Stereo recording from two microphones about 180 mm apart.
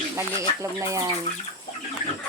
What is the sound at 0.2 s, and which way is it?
Speech, 15° right (ahead or behind).